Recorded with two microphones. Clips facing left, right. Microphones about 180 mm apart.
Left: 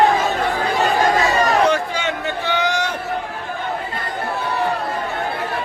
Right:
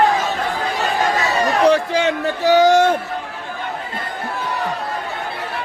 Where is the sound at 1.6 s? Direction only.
35° right (ahead or behind).